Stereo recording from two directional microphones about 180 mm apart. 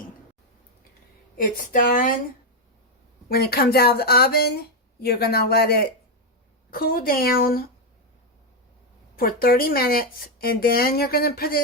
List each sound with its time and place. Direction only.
1.4 s speech: 45° left (ahead or behind)
3.2 s speech: 60° left (ahead or behind)
9.1 s speech: 55° left (ahead or behind)